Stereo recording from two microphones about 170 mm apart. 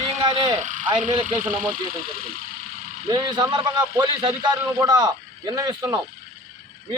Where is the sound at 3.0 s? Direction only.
25° right (ahead or behind).